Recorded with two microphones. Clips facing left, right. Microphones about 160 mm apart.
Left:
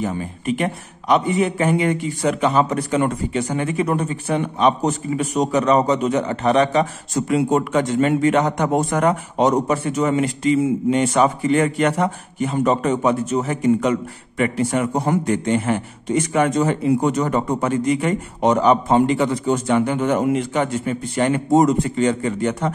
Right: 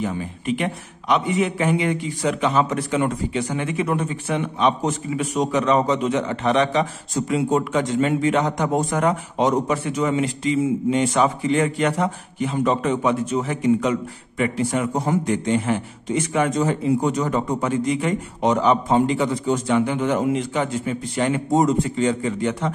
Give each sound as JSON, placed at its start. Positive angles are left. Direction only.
{"t": 0.0, "sound": "a man's voice", "side_deg": 40}
{"t": 8.7, "sound": "a man's voice", "side_deg": 60}
{"t": 9.4, "sound": "a man's voice", "side_deg": 40}
{"t": 14.4, "sound": "a man's voice", "side_deg": 60}